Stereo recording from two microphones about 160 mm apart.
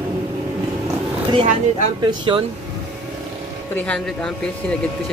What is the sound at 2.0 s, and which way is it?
Speech, 30° right (ahead or behind).